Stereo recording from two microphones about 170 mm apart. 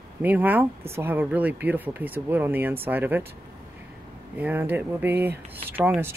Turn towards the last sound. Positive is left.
turn(degrees=-10)  # may be behind; listen again after turning